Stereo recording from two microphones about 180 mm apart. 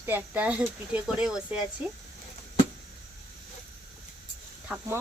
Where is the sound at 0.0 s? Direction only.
10° right (ahead or behind).